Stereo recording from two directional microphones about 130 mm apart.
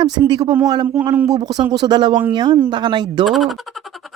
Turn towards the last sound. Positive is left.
turn(degrees=0)  # may be behind; listen again after turning